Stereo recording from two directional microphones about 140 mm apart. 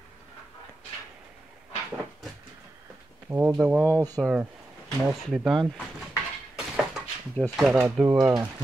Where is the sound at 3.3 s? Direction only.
15° right (ahead or behind).